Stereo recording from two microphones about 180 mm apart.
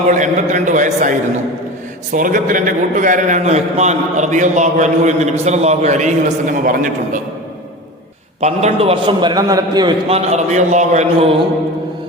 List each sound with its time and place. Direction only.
0.1 s a man's voice: 45° right (ahead or behind)
2.1 s a man's voice: 50° right (ahead or behind)
8.4 s a man's voice: 40° right (ahead or behind); by 9.9 s 20° right (ahead or behind)
10.1 s a man's voice: 35° right (ahead or behind)